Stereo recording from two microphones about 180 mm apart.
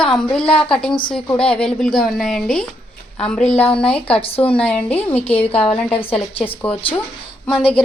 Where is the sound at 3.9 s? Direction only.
30° left (ahead or behind).